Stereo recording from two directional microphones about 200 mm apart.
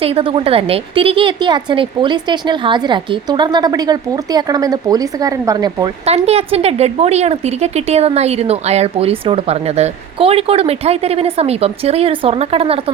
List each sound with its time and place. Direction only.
0.0 s a woman's voice: 30° right (ahead or behind)
6.1 s a woman's voice: 30° right (ahead or behind)